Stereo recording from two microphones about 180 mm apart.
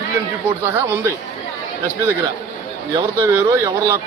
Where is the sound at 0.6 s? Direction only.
10° right (ahead or behind).